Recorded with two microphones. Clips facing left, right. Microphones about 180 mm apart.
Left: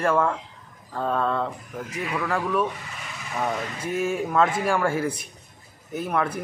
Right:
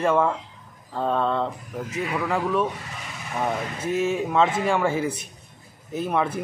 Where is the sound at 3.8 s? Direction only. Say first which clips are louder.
Right 3 dB; 25° right (ahead or behind).